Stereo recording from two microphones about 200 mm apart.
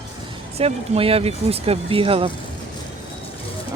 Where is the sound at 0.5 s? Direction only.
30° right (ahead or behind).